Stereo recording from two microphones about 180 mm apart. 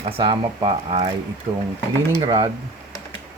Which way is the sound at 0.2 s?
30° right (ahead or behind).